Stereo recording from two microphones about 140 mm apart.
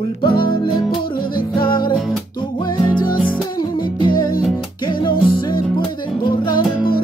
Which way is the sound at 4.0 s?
30° left (ahead or behind).